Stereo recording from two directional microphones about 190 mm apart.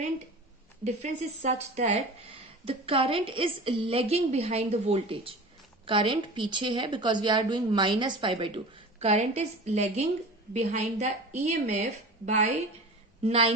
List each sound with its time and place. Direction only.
0.8 s a woman's voice: 35° right (ahead or behind)